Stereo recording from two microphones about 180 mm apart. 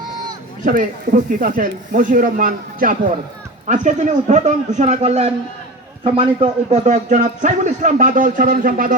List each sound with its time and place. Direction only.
0.6 s a man's voice: 45° right (ahead or behind)